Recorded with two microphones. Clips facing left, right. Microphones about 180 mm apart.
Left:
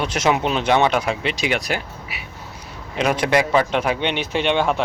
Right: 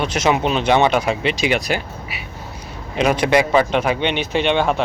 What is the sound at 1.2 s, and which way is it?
Speech, 90° right.